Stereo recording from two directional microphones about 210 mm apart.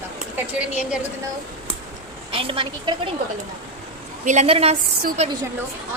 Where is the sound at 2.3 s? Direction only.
25° right (ahead or behind).